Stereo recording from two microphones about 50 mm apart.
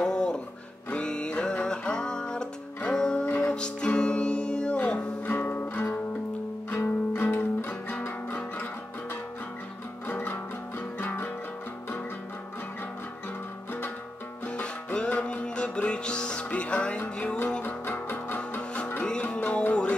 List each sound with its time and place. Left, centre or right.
0.0 s music: centre
5.2 s music: left
6.8 s music: left
7.9 s guitar: left
10.0 s music: left
14.4 s music: left
17.6 s music: left
19.3 s music: left